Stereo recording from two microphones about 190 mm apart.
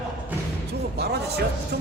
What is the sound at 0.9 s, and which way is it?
Speech, 60° right (ahead or behind).